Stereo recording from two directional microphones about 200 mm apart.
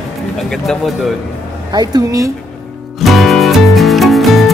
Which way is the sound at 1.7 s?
20° right (ahead or behind).